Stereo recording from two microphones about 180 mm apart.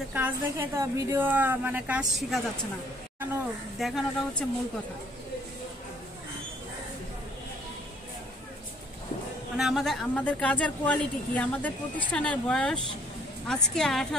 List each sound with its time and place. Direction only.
0.1 s speech: 10° right (ahead or behind)
3.7 s speech: centre (ahead or behind)
9.6 s speech: centre (ahead or behind)